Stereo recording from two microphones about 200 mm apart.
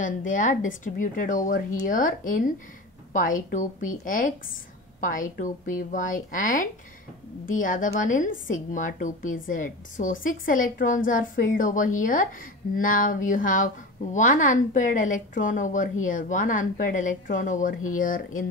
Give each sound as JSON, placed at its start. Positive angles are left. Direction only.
{"t": 0.0, "sound": "a woman's voice", "side_deg": 40}